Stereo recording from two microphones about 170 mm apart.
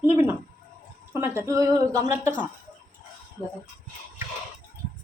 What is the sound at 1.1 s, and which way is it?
A woman's voice, 15° right (ahead or behind).